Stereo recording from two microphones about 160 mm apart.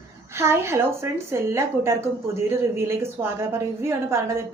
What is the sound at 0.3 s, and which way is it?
A woman's voice, 15° right (ahead or behind).